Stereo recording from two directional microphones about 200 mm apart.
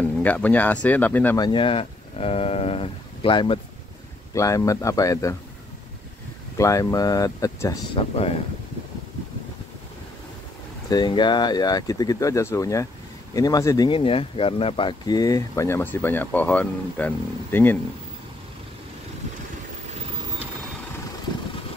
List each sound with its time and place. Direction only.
0.0 s speech: 10° left (ahead or behind)
1.4 s speech: 25° left (ahead or behind)
6.6 s speech: 15° left (ahead or behind)
10.9 s speech: 20° left (ahead or behind)